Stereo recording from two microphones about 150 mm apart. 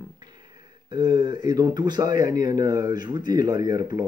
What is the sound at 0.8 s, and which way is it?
Speech, 30° right (ahead or behind).